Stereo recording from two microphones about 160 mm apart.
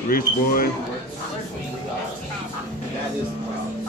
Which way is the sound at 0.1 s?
65° left (ahead or behind).